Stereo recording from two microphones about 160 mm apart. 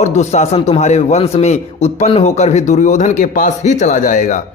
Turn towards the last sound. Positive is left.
turn(degrees=50)  # may be behind; listen again after turning